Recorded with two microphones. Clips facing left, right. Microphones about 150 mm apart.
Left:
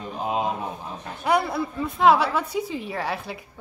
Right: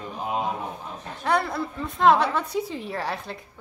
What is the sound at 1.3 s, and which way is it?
A woman's voice, 10° left (ahead or behind).